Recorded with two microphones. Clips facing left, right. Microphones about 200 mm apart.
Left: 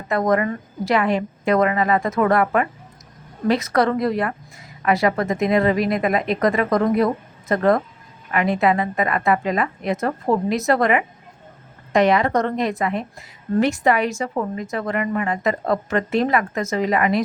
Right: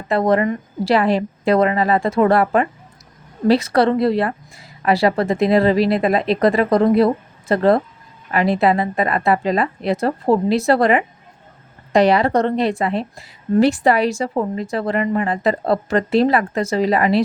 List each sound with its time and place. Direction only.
0.1 s a woman's voice: 30° right (ahead or behind)